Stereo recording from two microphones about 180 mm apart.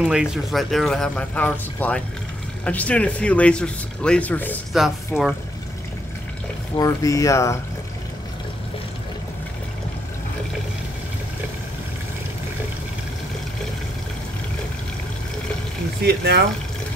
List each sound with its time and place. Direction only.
0.0 s speech: 5° right (ahead or behind)
4.7 s speech: centre (ahead or behind)
6.8 s speech: 20° left (ahead or behind)
16.0 s speech: 60° right (ahead or behind)